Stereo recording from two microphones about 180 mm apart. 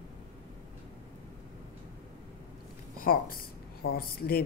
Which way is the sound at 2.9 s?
55° left (ahead or behind).